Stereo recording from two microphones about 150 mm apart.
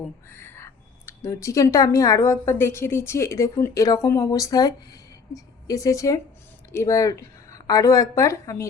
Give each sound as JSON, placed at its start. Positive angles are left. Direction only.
{"t": 0.3, "sound": "speech", "side_deg": 15}